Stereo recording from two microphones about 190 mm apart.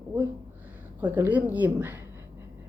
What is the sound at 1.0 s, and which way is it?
Speech, 10° right (ahead or behind).